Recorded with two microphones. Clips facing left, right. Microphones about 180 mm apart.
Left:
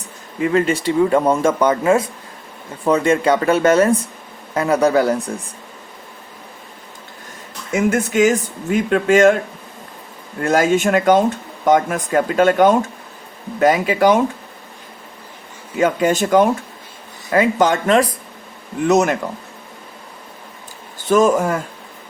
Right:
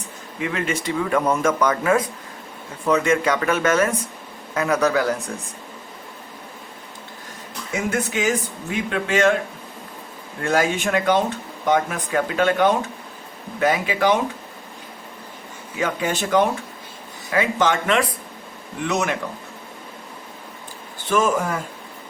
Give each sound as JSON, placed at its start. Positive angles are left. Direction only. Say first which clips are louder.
{"t": 0.4, "sound": "speech", "louder": "left 8 dB", "side_deg": 35}
{"t": 7.9, "sound": "speech", "louder": "left 7 dB", "side_deg": 45}
{"t": 10.4, "sound": "speech", "louder": "left 5 dB", "side_deg": 45}
{"t": 15.8, "sound": "speech", "louder": "left 7 dB", "side_deg": 40}
{"t": 21.1, "sound": "speech", "louder": "left 6 dB", "side_deg": 45}